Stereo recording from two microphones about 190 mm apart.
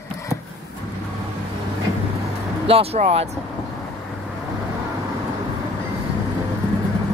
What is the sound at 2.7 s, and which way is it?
Speech, 30° right (ahead or behind).